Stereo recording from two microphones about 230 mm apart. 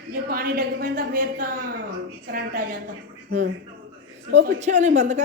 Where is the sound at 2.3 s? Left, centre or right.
Right.